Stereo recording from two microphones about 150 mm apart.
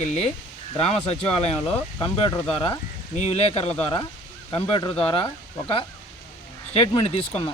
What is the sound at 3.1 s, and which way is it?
Speech, 45° left (ahead or behind).